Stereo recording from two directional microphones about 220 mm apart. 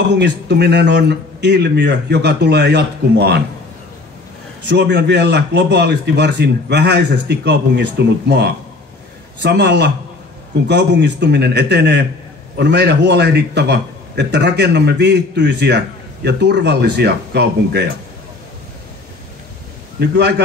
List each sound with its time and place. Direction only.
0.1 s a man's voice: 50° right (ahead or behind)
4.6 s a man's voice: 55° right (ahead or behind)
20.0 s a man's voice: 50° right (ahead or behind)